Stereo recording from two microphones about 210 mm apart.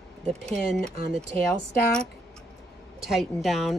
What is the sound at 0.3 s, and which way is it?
Speech, 5° left (ahead or behind).